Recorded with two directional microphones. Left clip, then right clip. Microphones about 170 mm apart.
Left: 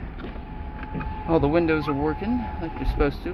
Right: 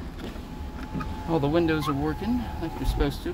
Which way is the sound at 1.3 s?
Centre (ahead or behind).